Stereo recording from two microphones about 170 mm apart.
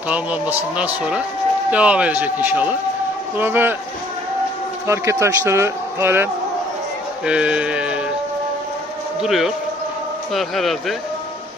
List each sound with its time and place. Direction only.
0.1 s speech: 10° right (ahead or behind)
4.8 s speech: 15° right (ahead or behind)
7.2 s sheep: 5° right (ahead or behind)
9.2 s sheep: centre (ahead or behind)